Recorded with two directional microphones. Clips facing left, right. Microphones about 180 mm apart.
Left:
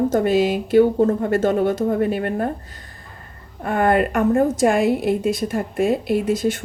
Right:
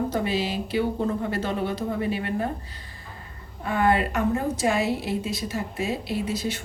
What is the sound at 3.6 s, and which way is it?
A woman's voice, 55° left (ahead or behind).